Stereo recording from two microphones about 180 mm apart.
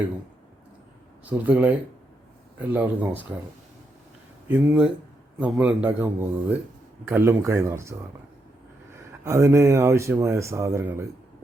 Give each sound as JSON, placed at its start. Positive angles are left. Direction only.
{"t": 1.2, "sound": "speech", "side_deg": -10}
{"t": 4.4, "sound": "speech", "side_deg": -10}
{"t": 9.2, "sound": "speech", "side_deg": -15}